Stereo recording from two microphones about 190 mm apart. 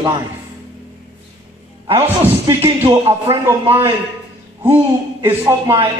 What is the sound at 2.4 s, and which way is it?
Speech, 30° right (ahead or behind).